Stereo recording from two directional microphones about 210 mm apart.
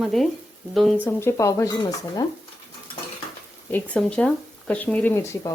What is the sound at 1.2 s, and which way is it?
Speech, 15° left (ahead or behind).